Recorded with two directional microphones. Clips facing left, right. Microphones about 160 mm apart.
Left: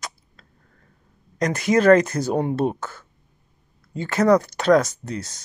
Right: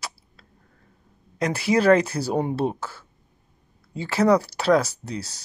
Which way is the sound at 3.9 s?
10° right (ahead or behind).